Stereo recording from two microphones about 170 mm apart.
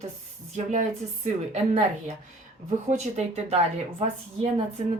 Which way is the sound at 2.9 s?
40° right (ahead or behind).